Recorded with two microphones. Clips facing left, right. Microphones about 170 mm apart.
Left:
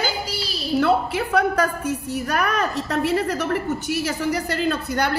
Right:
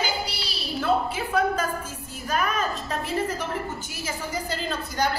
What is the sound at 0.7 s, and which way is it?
A woman's voice, 70° left (ahead or behind).